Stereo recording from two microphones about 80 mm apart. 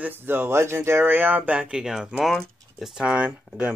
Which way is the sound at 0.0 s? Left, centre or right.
Right.